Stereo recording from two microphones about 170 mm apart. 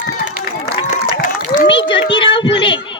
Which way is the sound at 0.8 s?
50° left (ahead or behind).